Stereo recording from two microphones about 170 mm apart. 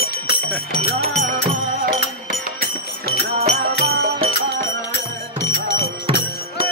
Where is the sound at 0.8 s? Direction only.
45° right (ahead or behind).